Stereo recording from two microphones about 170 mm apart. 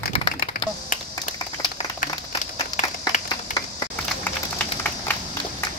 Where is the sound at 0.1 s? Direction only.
30° left (ahead or behind).